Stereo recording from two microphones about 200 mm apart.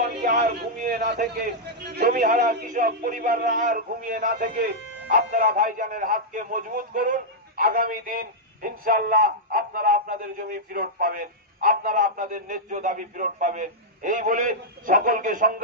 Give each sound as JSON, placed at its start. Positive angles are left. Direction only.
{"t": 0.0, "sound": "a man's voice", "side_deg": -45}